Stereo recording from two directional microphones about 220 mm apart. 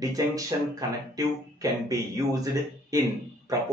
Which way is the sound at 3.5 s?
15° right (ahead or behind).